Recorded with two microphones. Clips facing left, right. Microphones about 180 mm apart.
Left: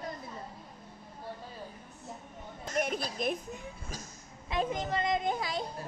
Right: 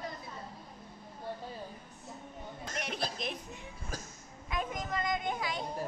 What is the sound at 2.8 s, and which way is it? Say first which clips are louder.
Speech: left 6 dB; 50° left (ahead or behind).